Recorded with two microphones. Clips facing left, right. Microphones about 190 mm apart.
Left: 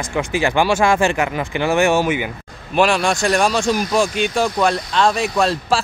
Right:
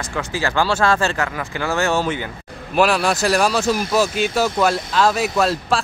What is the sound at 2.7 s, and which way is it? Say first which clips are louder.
Speech: left 1 dB; 5° right (ahead or behind).